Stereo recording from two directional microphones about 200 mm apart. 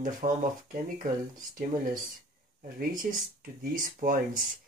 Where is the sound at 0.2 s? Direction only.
35° right (ahead or behind).